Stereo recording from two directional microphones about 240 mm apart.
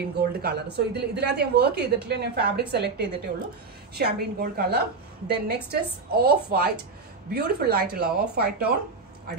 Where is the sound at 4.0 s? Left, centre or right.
Right.